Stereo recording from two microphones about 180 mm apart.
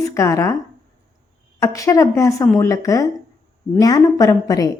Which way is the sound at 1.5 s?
15° left (ahead or behind).